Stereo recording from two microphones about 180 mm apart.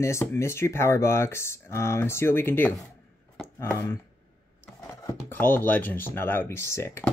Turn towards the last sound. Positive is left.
turn(degrees=15)  # may be behind; listen again after turning